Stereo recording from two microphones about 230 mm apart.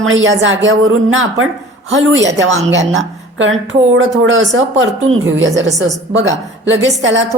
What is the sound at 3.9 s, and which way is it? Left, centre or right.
A woman's voice, right.